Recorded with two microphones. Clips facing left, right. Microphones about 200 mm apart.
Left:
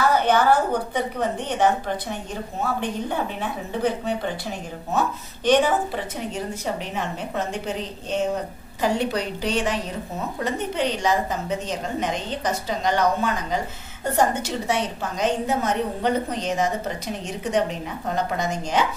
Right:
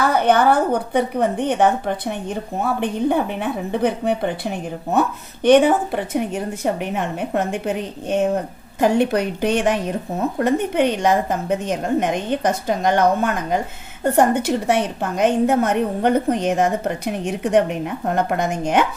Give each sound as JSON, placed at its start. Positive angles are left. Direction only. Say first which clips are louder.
{"t": 0.1, "sound": "a woman's voice", "louder": "right 3 dB", "side_deg": -60}